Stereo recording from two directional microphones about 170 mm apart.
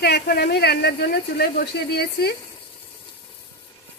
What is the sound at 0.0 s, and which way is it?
Speech, 70° left (ahead or behind).